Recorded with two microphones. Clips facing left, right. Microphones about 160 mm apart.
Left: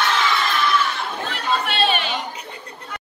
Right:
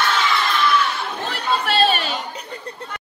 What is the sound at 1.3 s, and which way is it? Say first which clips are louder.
Chatter: right 3 dB; 40° right (ahead or behind).